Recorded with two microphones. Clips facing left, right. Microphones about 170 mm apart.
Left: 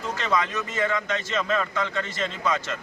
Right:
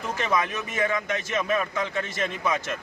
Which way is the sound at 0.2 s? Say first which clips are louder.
Even; 15° right (ahead or behind).